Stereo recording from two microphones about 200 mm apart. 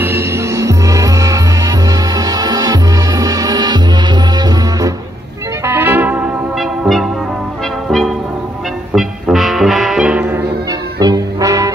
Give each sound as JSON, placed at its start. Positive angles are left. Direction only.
{"t": 0.0, "sound": "music", "side_deg": -10}
{"t": 8.9, "sound": "music", "side_deg": 0}
{"t": 11.0, "sound": "music", "side_deg": -20}